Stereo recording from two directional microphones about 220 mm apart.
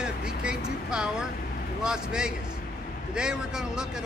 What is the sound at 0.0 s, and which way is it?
Vehicle, 5° right (ahead or behind).